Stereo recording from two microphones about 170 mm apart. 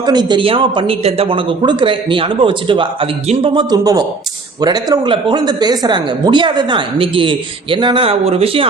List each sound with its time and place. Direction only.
0.0 s a man's voice: 25° right (ahead or behind)